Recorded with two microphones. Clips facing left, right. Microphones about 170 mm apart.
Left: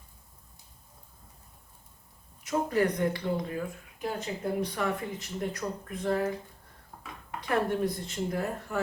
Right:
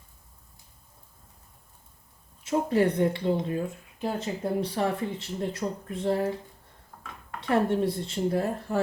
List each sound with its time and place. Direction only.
2.4 s speech: 25° right (ahead or behind)
6.9 s a sound: 15° left (ahead or behind)
7.4 s speech: 25° right (ahead or behind)